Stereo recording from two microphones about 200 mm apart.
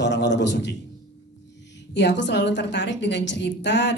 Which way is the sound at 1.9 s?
60° left (ahead or behind).